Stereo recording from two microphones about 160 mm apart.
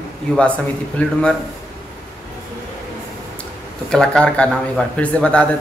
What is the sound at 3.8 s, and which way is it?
A man's voice, 5° left (ahead or behind).